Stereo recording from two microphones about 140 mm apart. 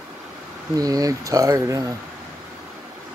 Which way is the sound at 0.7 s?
25° right (ahead or behind).